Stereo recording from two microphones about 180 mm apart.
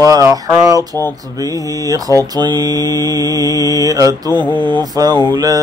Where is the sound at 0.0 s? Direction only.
20° right (ahead or behind).